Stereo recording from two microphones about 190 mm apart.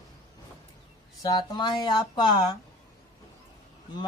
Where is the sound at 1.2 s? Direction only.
20° left (ahead or behind).